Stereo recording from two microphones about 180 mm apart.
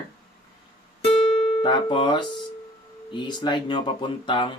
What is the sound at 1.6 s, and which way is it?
Speech, 25° left (ahead or behind).